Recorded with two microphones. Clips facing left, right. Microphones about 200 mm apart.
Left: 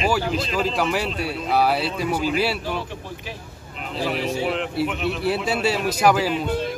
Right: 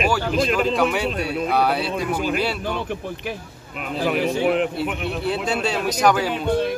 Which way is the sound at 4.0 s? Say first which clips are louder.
Right 3 dB; 55° right (ahead or behind).